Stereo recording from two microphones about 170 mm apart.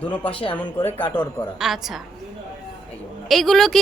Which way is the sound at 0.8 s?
10° left (ahead or behind).